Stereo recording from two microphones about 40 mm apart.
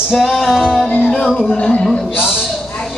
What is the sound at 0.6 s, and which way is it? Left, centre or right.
Music, centre.